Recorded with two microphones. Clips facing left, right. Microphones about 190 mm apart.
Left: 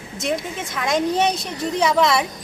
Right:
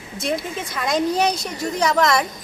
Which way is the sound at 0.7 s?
Centre (ahead or behind).